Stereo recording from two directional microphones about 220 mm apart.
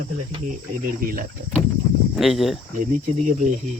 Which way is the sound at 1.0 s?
40° right (ahead or behind).